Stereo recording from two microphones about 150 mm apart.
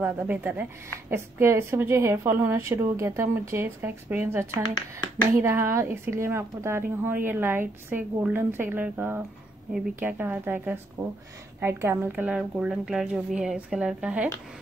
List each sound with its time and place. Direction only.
0.0 s a woman's voice: 15° right (ahead or behind)